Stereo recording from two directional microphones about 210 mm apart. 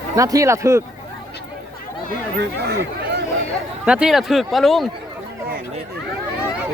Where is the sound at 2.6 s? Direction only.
50° right (ahead or behind).